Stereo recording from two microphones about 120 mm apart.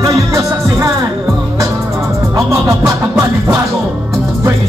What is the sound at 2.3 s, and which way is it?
Music, 25° right (ahead or behind).